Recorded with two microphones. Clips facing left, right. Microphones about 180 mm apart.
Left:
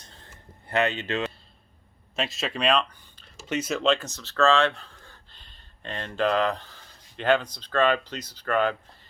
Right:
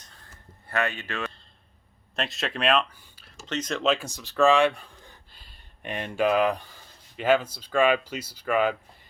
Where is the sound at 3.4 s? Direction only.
10° left (ahead or behind).